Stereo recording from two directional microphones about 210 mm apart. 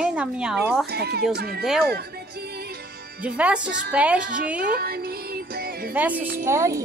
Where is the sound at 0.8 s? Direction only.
50° right (ahead or behind).